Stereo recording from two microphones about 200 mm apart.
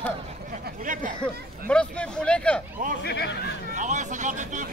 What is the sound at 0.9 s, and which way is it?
Chatter, 40° right (ahead or behind).